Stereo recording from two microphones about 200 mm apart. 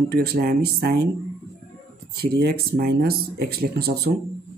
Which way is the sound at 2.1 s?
50° right (ahead or behind).